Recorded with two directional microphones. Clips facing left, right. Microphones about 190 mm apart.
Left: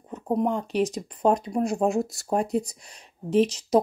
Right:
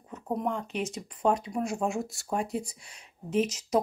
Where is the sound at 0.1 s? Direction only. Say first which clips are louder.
Left 6 dB; 30° left (ahead or behind).